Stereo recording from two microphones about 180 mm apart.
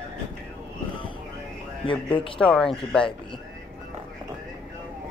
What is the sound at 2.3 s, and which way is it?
Speech, 5° left (ahead or behind).